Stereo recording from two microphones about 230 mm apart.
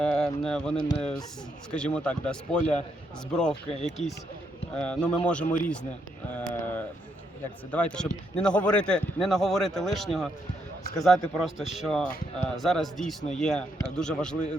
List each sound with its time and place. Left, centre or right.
0.0 s mantra: centre
0.8 s speech: left
1.7 s speech: centre
6.3 s a sound: centre
7.7 s speech: centre